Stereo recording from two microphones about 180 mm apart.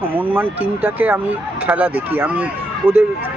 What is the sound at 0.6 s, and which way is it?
Speech, 10° right (ahead or behind).